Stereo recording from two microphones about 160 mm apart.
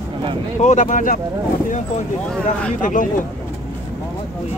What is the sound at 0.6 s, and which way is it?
Speech, 50° left (ahead or behind).